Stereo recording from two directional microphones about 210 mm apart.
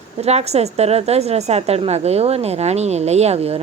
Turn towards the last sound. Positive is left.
turn(degrees=-30)  # may be behind; listen again after turning